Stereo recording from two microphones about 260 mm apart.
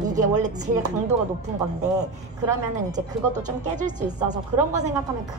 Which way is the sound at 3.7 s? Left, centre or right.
Right.